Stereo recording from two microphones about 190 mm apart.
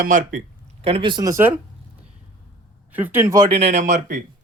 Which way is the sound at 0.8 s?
30° right (ahead or behind).